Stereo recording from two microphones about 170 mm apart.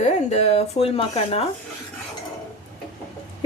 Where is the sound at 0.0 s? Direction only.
40° left (ahead or behind).